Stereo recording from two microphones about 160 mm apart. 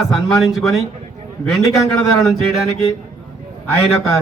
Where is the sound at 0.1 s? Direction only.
20° left (ahead or behind).